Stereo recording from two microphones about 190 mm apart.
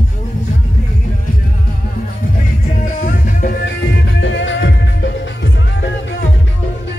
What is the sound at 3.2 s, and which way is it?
Music, 50° left (ahead or behind).